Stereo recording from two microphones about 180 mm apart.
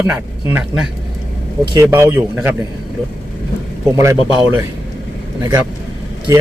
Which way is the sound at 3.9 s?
15° right (ahead or behind).